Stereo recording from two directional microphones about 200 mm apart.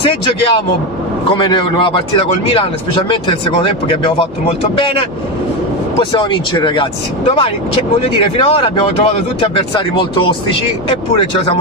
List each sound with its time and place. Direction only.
1.3 s speech: 25° left (ahead or behind)